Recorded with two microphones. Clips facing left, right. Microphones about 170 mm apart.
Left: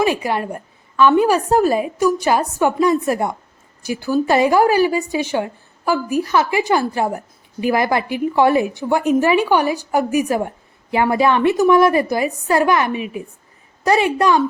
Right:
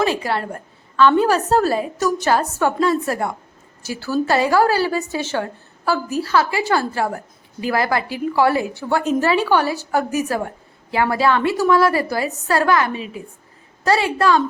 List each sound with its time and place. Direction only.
0.0 s a woman's voice: 15° left (ahead or behind)